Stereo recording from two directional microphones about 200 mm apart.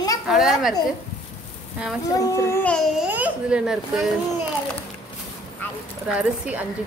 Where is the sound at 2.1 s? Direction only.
15° left (ahead or behind); by 4.0 s 5° right (ahead or behind).